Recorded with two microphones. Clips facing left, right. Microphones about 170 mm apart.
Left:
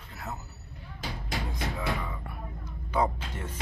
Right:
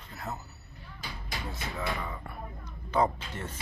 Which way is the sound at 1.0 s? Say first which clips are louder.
Left 5 dB; 90° left.